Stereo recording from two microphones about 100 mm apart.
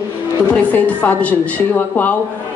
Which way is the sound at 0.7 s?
15° left (ahead or behind).